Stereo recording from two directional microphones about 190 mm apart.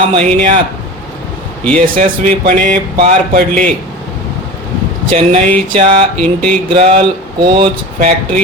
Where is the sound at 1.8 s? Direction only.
45° right (ahead or behind).